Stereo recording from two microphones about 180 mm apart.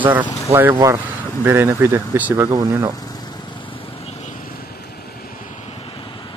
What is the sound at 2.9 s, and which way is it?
Vehicle, 20° left (ahead or behind).